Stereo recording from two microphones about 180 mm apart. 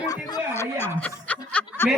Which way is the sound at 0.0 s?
20° left (ahead or behind).